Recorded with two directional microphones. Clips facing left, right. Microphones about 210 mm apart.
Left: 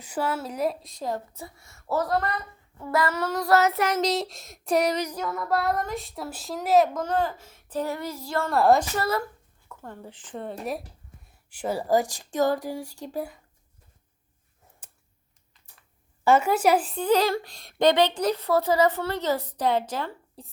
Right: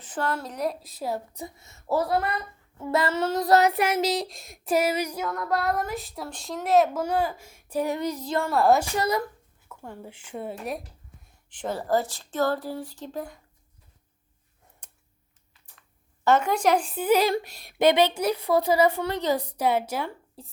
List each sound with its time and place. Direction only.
0.0 s a woman's voice: 10° left (ahead or behind); by 2.3 s 10° right (ahead or behind)
2.8 s a woman's voice: 25° right (ahead or behind)
5.3 s a woman's voice: centre (ahead or behind); by 8.4 s 20° right (ahead or behind)
8.4 s a woman's voice: centre (ahead or behind)
8.8 s a woman's voice: 15° right (ahead or behind)
10.6 s a woman's voice: centre (ahead or behind)
14.8 s a sound: 5° left (ahead or behind)
16.2 s a woman's voice: 10° left (ahead or behind)